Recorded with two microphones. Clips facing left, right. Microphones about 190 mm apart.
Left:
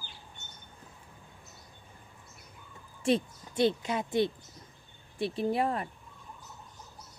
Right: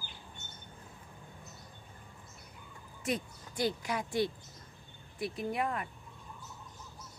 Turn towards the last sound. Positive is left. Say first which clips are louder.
# left 5 dB
turn(degrees=30)  # may be behind; listen again after turning